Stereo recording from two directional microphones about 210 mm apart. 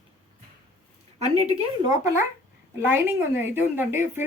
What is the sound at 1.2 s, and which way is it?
Speech, 30° right (ahead or behind).